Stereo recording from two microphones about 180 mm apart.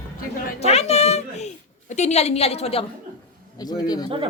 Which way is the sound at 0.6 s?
35° left (ahead or behind).